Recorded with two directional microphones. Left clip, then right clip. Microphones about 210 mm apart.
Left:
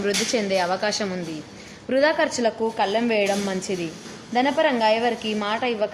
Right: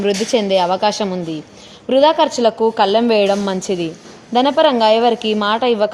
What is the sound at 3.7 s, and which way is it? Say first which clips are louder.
A woman's voice: right 8 dB; 50° right (ahead or behind).